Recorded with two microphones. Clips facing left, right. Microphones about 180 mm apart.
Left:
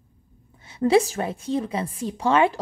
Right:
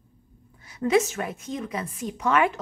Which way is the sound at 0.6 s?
30° left (ahead or behind).